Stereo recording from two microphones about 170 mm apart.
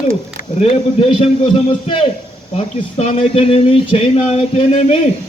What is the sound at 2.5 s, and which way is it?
Speech, 35° left (ahead or behind).